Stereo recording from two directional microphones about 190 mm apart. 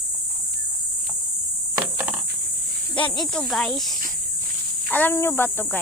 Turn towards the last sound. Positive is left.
turn(degrees=10)  # may be behind; listen again after turning